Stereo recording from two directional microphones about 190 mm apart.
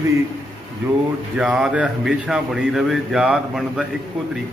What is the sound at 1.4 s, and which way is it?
A man's voice, 5° right (ahead or behind).